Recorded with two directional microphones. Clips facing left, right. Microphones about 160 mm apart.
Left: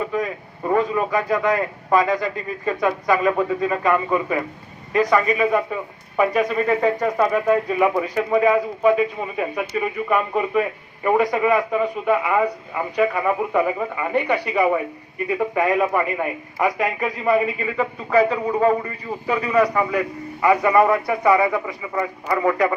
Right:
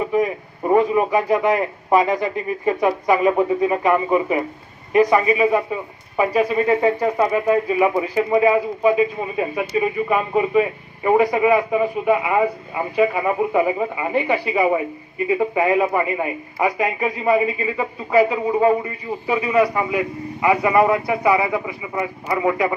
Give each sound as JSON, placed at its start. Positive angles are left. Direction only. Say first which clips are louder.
{"t": 0.0, "sound": "a man's voice", "louder": "right 4 dB", "side_deg": -20}
{"t": 20.7, "sound": "a man's voice", "louder": "even", "side_deg": -15}